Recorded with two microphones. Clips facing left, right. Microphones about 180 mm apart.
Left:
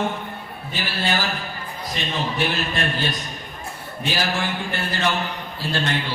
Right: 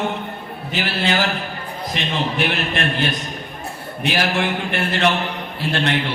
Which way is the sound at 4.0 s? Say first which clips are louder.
Right 4 dB; 65° right (ahead or behind).